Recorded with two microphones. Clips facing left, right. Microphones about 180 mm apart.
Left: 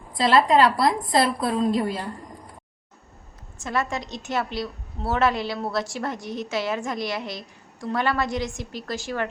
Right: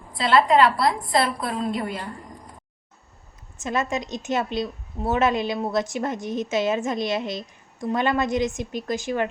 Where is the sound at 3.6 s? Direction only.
20° right (ahead or behind).